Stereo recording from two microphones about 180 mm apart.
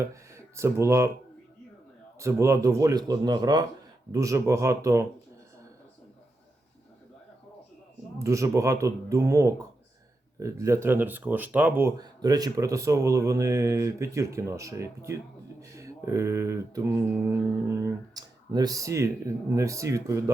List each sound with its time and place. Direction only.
0.0 s speech: 15° right (ahead or behind)
2.1 s speech: 15° right (ahead or behind)
8.2 s speech: 15° right (ahead or behind)